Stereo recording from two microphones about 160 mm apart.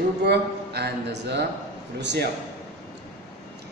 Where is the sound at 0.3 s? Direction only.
90° right.